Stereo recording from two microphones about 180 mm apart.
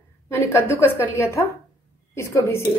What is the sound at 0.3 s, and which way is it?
A woman's voice, 15° left (ahead or behind).